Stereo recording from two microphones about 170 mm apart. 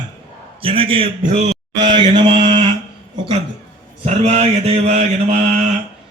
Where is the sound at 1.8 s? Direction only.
30° right (ahead or behind).